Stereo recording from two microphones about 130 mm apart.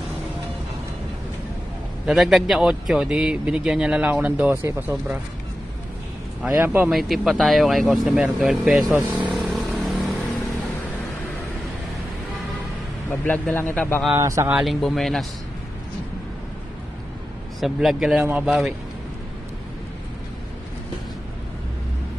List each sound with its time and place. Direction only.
2.0 s speech: centre (ahead or behind)
6.4 s speech: 15° right (ahead or behind)
6.9 s speech: centre (ahead or behind)
9.1 s vehicle: centre (ahead or behind)
13.2 s a man's voice: 10° left (ahead or behind)
14.1 s speech: 25° right (ahead or behind)
14.5 s speech: centre (ahead or behind)
17.6 s speech: centre (ahead or behind)